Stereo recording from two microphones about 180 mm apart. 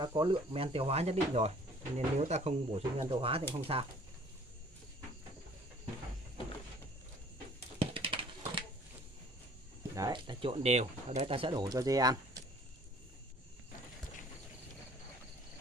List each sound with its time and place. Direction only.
0.0 s speech: 25° right (ahead or behind)
7.8 s a sound: 30° right (ahead or behind)
9.9 s speech: 25° right (ahead or behind)